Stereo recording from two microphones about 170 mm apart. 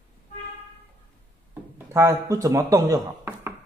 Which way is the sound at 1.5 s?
20° right (ahead or behind).